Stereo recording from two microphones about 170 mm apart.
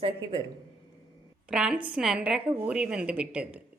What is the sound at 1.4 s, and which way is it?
A woman's voice, 5° right (ahead or behind).